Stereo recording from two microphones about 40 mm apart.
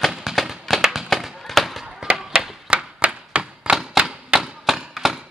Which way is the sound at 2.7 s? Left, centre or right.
Right.